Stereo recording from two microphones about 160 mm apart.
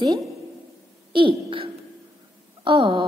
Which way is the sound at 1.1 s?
35° right (ahead or behind).